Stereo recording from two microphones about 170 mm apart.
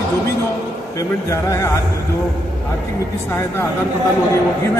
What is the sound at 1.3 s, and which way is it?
Speech, 15° left (ahead or behind).